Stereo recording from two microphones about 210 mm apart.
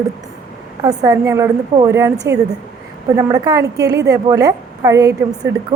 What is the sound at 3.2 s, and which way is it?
A woman's voice, 15° right (ahead or behind).